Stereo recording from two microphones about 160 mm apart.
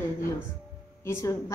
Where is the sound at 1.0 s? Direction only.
20° left (ahead or behind).